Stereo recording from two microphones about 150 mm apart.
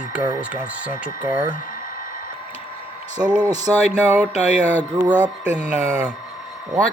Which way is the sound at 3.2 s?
5° right (ahead or behind).